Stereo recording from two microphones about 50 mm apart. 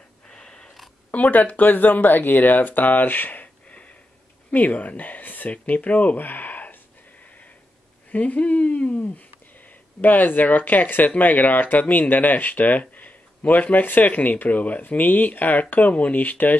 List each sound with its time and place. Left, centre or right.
0.3 s snort: centre
1.1 s speech: left
4.5 s speech: left
8.1 s speech: left
10.0 s speech: left